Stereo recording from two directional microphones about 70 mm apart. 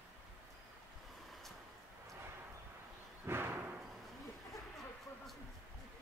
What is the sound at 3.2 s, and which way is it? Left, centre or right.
Thump, right.